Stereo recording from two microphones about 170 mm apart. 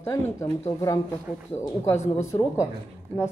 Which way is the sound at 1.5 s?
15° left (ahead or behind).